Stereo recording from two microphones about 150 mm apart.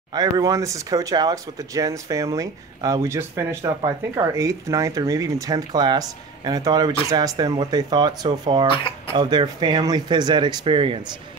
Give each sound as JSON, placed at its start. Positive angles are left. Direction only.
{"t": 0.1, "sound": "speech", "side_deg": -25}
{"t": 8.7, "sound": "speech", "side_deg": 35}
{"t": 9.1, "sound": "speech", "side_deg": -30}